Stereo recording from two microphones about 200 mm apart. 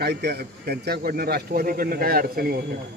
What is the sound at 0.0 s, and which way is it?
A man's voice, 55° right (ahead or behind).